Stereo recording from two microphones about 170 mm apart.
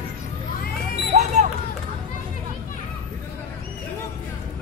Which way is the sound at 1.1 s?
45° right (ahead or behind).